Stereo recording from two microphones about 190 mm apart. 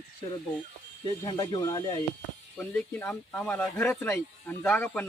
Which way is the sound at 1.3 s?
20° left (ahead or behind).